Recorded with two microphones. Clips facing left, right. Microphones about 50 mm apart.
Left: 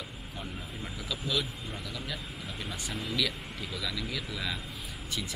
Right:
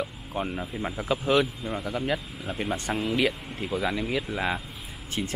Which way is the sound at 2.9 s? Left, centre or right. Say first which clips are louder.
Right 8 dB; right.